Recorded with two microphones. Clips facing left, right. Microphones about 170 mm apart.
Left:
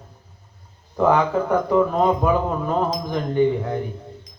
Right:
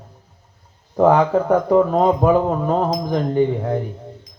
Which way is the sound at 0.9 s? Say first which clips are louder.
Right 4 dB; 40° right (ahead or behind).